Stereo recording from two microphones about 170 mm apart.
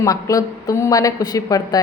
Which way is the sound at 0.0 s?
20° left (ahead or behind).